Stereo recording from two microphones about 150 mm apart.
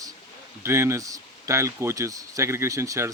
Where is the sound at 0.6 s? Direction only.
15° right (ahead or behind).